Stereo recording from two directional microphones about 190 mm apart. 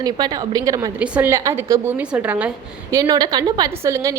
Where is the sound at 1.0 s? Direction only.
10° right (ahead or behind).